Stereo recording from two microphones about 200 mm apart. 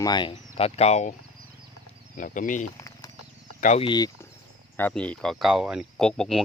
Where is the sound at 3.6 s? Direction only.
35° left (ahead or behind).